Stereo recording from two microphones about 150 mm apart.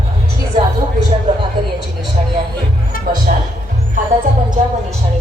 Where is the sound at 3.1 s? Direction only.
80° right.